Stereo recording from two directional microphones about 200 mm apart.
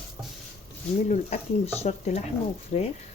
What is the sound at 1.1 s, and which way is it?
Speech, 35° left (ahead or behind).